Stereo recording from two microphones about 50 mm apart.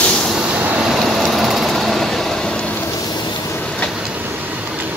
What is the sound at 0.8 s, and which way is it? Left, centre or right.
Vehicle, centre.